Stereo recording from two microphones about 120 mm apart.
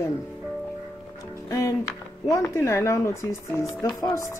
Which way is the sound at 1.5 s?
25° left (ahead or behind).